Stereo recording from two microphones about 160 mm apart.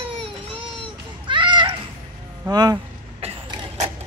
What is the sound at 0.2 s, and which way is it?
Baby cry, 35° right (ahead or behind).